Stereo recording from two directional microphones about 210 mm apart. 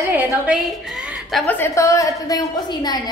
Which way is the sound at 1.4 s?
10° left (ahead or behind).